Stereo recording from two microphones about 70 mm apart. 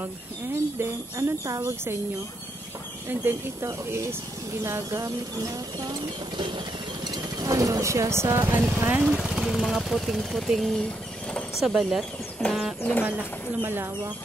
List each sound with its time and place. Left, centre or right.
0.7 s speech: right
3.3 s speech: right
3.6 s speech: right
5.8 s speech: right
7.1 s speech: right
8.5 s speech: right
9.0 s speech: centre
13.0 s speech: right